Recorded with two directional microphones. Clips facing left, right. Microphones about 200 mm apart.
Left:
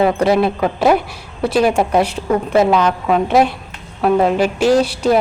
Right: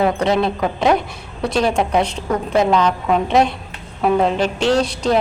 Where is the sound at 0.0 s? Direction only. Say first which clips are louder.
Left 3 dB; 5° left (ahead or behind).